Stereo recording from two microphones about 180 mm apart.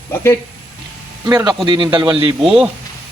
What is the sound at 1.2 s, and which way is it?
A man's voice, 25° right (ahead or behind).